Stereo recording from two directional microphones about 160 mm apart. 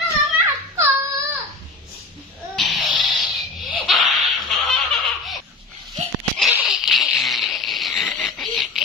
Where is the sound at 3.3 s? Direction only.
Centre (ahead or behind).